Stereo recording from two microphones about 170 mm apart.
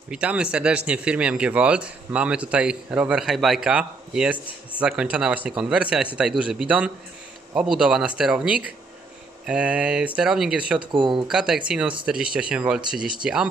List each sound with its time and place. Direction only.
0.1 s speech: 5° right (ahead or behind)
10.8 s speech: 30° right (ahead or behind)
11.2 s speech: 5° right (ahead or behind)